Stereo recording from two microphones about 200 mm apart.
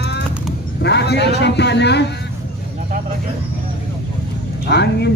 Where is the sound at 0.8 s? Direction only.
55° left (ahead or behind).